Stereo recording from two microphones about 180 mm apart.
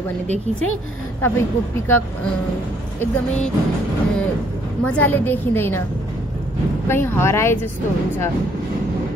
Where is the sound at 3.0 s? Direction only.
10° left (ahead or behind).